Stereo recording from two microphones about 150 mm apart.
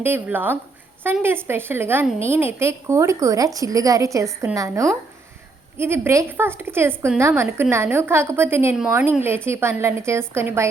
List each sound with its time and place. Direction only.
0.0 s a woman's voice: 15° right (ahead or behind)